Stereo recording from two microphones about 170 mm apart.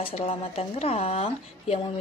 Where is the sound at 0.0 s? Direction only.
35° left (ahead or behind).